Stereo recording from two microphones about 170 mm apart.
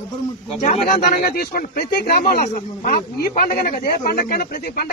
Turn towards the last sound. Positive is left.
turn(degrees=60)  # may be behind; listen again after turning